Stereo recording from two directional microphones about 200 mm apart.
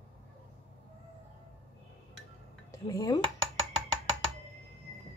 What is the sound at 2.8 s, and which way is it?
Speech, 20° left (ahead or behind).